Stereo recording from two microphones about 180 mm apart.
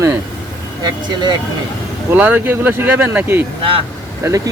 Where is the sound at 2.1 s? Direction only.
10° right (ahead or behind).